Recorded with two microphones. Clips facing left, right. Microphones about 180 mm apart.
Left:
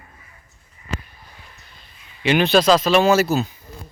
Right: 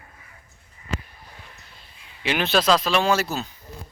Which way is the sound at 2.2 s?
Centre (ahead or behind).